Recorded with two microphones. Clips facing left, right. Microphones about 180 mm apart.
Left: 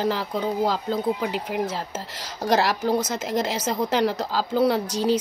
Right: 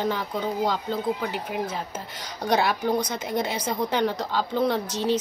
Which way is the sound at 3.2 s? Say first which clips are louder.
Left 2 dB; 90° left.